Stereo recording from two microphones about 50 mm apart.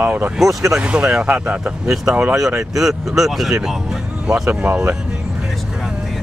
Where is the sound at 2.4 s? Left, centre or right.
Centre.